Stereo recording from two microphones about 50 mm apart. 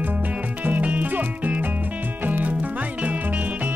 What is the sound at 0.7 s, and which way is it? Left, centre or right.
Music, right.